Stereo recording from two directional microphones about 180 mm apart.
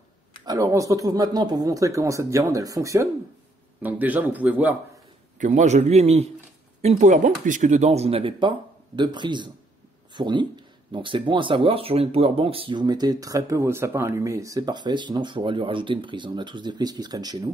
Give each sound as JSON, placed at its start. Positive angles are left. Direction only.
{"t": 0.5, "sound": "speech", "side_deg": -15}
{"t": 5.4, "sound": "speech", "side_deg": -40}